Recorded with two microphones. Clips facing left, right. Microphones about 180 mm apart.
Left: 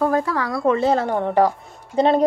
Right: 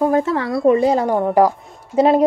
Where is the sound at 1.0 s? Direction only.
40° right (ahead or behind).